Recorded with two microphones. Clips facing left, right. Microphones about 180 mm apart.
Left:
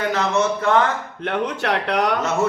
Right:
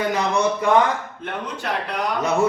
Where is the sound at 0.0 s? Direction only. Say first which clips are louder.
Even; 15° right (ahead or behind).